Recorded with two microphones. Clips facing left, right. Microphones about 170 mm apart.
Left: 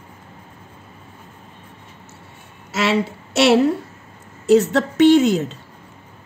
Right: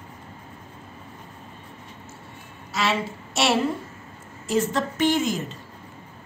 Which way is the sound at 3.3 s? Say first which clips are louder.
Left 8 dB; 70° left (ahead or behind).